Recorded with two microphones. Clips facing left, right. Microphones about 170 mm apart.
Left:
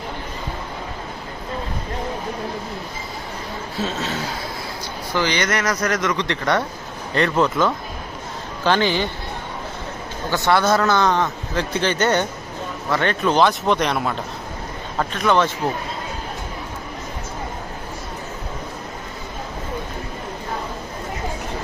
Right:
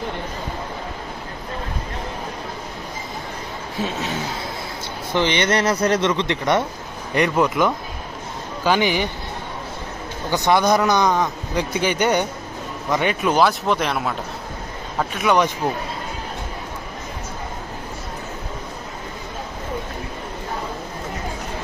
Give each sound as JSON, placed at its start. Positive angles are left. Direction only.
{"t": 3.8, "sound": "speech", "side_deg": -15}
{"t": 5.1, "sound": "speech", "side_deg": -20}
{"t": 10.3, "sound": "speech", "side_deg": -15}